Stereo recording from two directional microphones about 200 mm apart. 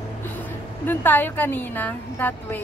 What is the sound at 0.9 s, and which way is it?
A woman's voice, 10° left (ahead or behind).